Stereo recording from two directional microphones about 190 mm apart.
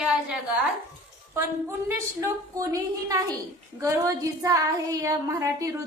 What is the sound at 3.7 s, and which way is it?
Female singing, 15° right (ahead or behind).